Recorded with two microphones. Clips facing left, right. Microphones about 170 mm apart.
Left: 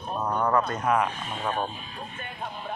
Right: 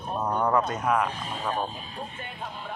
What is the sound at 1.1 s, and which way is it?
Speech, 35° right (ahead or behind).